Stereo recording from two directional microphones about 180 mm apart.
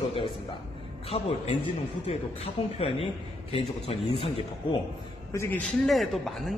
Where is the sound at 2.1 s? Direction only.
35° left (ahead or behind).